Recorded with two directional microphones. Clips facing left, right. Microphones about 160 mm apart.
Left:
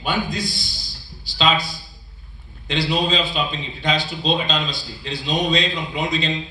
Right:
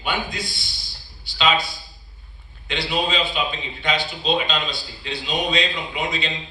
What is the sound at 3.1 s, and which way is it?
A man's voice, 35° left (ahead or behind).